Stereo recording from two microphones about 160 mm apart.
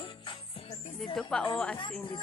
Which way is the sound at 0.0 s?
30° left (ahead or behind).